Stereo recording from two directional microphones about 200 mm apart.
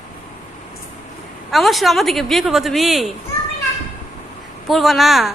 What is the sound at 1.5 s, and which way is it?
A woman's voice, centre (ahead or behind).